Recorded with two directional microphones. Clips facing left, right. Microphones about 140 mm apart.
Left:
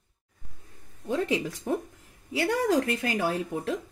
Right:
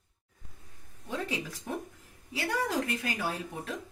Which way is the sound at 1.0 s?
40° left (ahead or behind).